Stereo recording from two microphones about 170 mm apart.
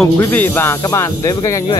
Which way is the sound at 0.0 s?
10° left (ahead or behind).